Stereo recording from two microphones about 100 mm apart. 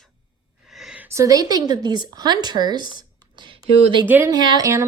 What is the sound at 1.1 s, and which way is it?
Speech, 35° right (ahead or behind).